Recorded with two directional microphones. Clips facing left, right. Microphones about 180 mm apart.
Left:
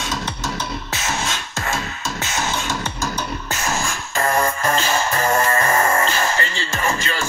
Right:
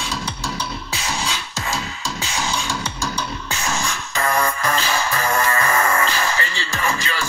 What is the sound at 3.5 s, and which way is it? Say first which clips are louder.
Music: left 1 dB; 40° left (ahead or behind).